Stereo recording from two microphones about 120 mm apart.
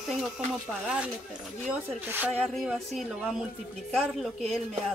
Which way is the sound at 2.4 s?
Centre (ahead or behind).